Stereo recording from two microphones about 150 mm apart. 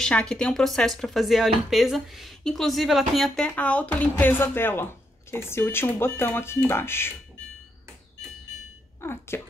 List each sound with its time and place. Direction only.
0.0 s speech: 5° left (ahead or behind)
9.0 s speech: 15° left (ahead or behind)